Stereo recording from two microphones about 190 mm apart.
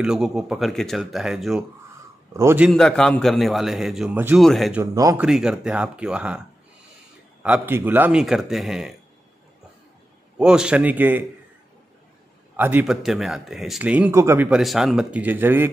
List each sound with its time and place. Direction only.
0.0 s a man's voice: 5° right (ahead or behind)
2.7 s speech: 5° left (ahead or behind)
4.9 s a man's voice: 20° right (ahead or behind)
5.2 s speech: 5° right (ahead or behind)
7.4 s speech: 10° right (ahead or behind)
10.3 s a man's voice: 5° right (ahead or behind)
12.5 s speech: 10° right (ahead or behind)